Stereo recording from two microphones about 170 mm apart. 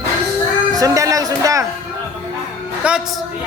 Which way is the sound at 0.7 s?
20° right (ahead or behind).